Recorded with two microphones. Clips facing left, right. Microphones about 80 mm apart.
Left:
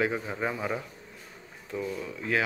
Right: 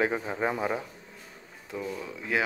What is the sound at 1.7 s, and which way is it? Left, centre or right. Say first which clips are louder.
Speech: left 1 dB; centre.